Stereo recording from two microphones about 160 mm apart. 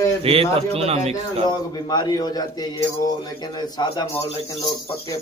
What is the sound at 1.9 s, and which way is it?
Speech, 25° left (ahead or behind).